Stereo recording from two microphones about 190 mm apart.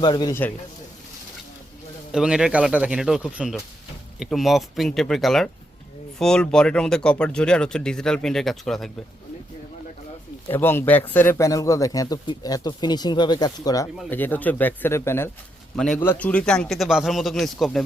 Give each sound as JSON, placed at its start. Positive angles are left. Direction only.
{"t": 0.0, "sound": "speech", "side_deg": 20}
{"t": 2.1, "sound": "speech", "side_deg": -5}
{"t": 10.5, "sound": "speech", "side_deg": 10}
{"t": 14.1, "sound": "speech", "side_deg": 10}